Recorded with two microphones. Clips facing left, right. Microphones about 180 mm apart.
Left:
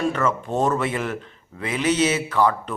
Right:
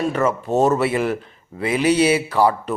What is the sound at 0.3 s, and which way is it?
A man's voice, 5° right (ahead or behind).